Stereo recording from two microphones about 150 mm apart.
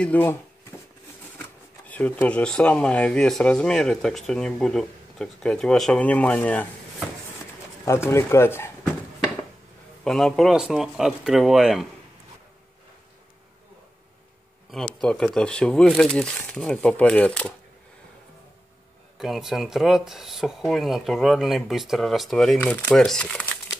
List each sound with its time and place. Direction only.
0.0 s speech: 10° left (ahead or behind)
1.4 s speech: 10° left (ahead or behind)
7.8 s speech: 15° left (ahead or behind)
10.0 s speech: 5° left (ahead or behind)
14.7 s speech: centre (ahead or behind)
19.1 s speech: centre (ahead or behind)